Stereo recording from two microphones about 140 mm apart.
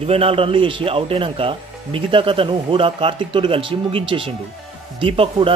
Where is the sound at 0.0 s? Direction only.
45° right (ahead or behind).